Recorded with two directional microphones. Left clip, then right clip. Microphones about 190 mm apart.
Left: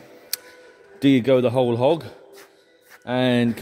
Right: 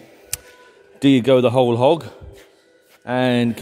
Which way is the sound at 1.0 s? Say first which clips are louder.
Right 3 dB; 15° right (ahead or behind).